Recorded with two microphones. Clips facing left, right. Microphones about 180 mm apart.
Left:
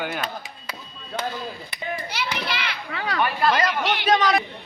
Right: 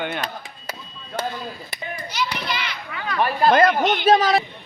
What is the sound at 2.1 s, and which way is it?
Children playing, 65° left (ahead or behind).